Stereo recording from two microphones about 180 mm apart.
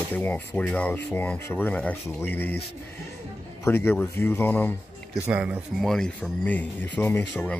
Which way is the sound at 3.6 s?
15° left (ahead or behind).